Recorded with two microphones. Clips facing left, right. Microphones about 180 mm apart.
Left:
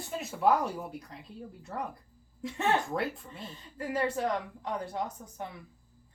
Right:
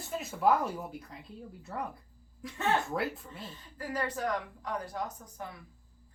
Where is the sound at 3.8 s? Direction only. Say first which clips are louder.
Left 4 dB; 25° left (ahead or behind).